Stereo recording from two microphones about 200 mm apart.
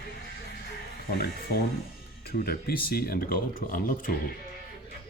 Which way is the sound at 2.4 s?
50° left (ahead or behind).